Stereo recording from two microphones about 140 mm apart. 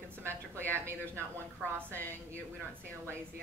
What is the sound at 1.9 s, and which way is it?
Speech, 10° left (ahead or behind).